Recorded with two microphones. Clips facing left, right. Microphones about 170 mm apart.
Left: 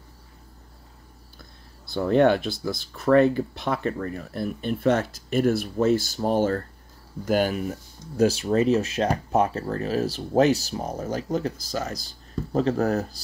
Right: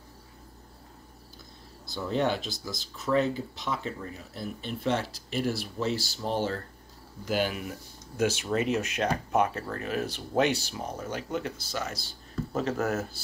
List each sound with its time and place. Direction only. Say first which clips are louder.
1.9 s speech: left 9 dB; 60° left (ahead or behind); by 13.2 s 35° left (ahead or behind)